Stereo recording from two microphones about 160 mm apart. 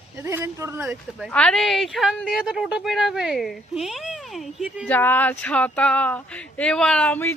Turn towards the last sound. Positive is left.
turn(degrees=10)  # may be behind; listen again after turning